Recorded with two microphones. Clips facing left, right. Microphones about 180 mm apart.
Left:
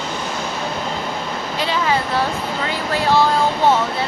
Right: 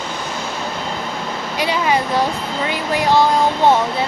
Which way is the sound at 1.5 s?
15° right (ahead or behind).